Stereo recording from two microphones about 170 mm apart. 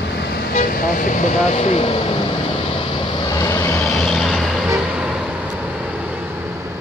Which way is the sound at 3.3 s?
15° left (ahead or behind).